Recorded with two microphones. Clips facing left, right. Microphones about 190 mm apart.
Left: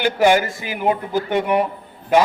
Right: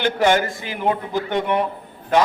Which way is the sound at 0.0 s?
10° left (ahead or behind).